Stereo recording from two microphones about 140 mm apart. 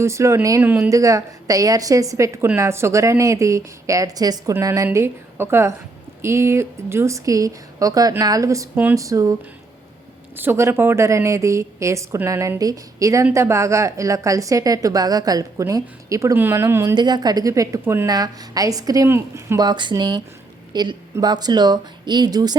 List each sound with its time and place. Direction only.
0.0 s a woman's voice: 20° right (ahead or behind)
10.3 s a woman's voice: 15° right (ahead or behind)
16.9 s a woman's voice: 30° right (ahead or behind)
19.6 s a woman's voice: 30° right (ahead or behind)